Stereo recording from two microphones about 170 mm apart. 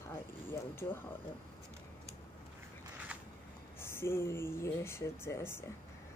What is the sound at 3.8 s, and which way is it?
Speech, 15° left (ahead or behind).